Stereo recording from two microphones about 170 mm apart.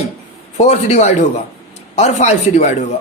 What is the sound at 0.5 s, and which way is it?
A man's voice, 40° left (ahead or behind).